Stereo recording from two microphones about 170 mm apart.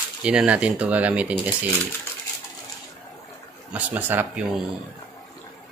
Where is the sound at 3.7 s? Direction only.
10° right (ahead or behind).